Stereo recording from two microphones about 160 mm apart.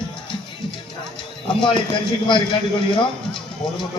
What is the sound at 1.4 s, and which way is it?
Speech, 30° left (ahead or behind).